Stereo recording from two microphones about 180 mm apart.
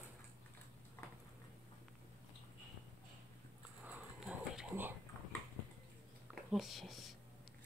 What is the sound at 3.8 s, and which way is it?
Dog, 10° right (ahead or behind).